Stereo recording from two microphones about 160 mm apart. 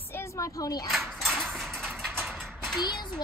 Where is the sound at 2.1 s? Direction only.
10° right (ahead or behind).